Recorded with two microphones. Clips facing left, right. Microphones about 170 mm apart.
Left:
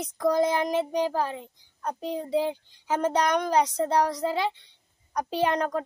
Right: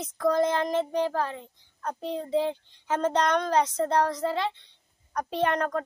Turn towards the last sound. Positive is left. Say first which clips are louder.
# left 1 dB
turn(degrees=10)  # may be behind; listen again after turning